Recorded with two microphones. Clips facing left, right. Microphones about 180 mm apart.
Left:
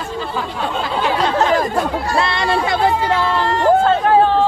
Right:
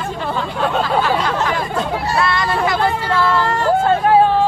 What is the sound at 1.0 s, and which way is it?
Speech, 20° left (ahead or behind).